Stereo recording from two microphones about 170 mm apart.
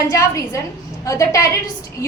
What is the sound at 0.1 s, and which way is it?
A woman's voice, 20° left (ahead or behind).